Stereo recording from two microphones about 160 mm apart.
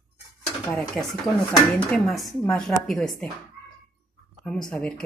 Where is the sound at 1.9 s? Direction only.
Centre (ahead or behind).